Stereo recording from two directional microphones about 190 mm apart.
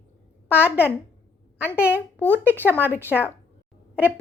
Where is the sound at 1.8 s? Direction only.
10° right (ahead or behind).